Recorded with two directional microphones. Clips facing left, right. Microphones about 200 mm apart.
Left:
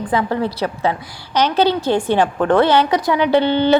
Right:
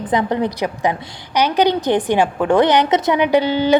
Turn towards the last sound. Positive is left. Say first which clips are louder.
# left 1 dB
turn(degrees=-10)  # may be behind; listen again after turning